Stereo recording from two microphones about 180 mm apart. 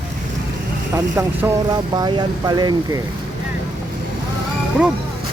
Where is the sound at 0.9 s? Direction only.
15° right (ahead or behind).